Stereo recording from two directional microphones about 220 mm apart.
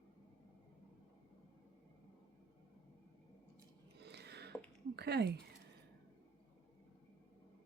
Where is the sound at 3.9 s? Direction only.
50° right (ahead or behind).